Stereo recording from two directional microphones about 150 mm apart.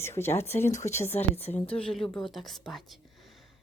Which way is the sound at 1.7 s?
5° left (ahead or behind).